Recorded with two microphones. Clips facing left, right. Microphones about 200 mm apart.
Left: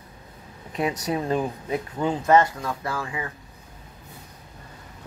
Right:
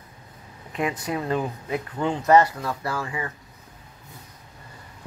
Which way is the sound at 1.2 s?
15° left (ahead or behind).